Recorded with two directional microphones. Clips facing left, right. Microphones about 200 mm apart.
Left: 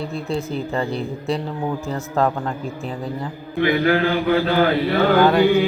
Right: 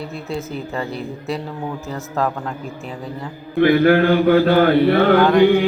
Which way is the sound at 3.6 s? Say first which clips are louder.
Right 5 dB; 50° right (ahead or behind).